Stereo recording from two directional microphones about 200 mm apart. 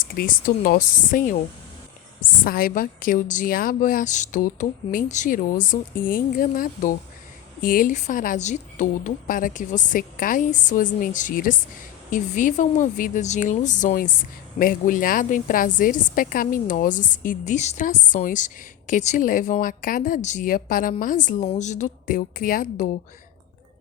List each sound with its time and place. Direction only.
0.0 s a woman's voice: 45° left (ahead or behind)